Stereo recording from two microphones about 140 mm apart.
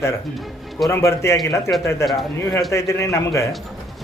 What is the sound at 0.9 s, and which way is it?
Speech, 20° left (ahead or behind).